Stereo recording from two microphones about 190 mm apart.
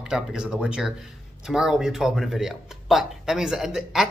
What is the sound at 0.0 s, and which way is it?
A man's voice, 5° right (ahead or behind).